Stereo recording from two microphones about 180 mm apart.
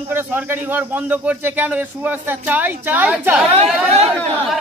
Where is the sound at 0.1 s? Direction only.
10° right (ahead or behind).